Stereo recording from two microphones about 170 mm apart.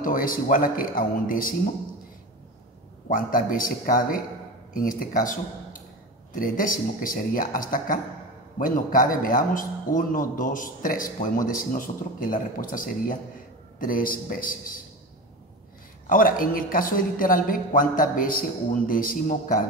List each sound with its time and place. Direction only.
0.0 s a man's voice: 55° left (ahead or behind)
3.1 s a man's voice: 55° left (ahead or behind)
16.1 s a man's voice: 55° left (ahead or behind)